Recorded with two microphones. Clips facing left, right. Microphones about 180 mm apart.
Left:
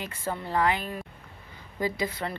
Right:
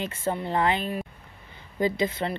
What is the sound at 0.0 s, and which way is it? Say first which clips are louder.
A woman's voice: right 5 dB; 25° right (ahead or behind).